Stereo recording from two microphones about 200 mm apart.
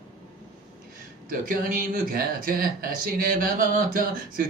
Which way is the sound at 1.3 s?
45° right (ahead or behind).